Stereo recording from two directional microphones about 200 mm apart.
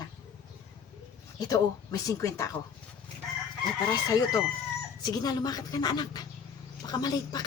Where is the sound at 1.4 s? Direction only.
20° left (ahead or behind).